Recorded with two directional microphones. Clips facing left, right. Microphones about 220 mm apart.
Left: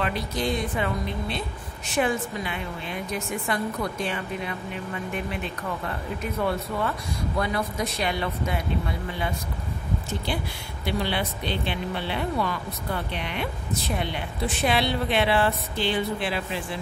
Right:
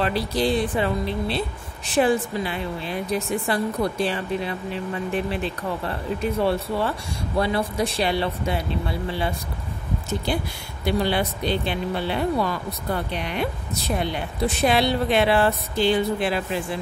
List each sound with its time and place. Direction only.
0.0 s speech: 35° right (ahead or behind)
10.9 s speech: 40° right (ahead or behind)